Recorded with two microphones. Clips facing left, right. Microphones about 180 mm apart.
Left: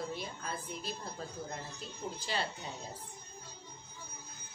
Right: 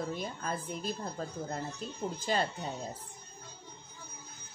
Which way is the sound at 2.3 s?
45° right (ahead or behind).